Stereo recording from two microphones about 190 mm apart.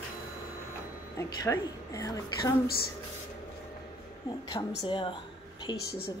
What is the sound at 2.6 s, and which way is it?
Speech, 55° left (ahead or behind).